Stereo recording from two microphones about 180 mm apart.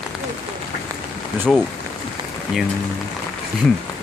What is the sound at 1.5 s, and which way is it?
Speech, centre (ahead or behind).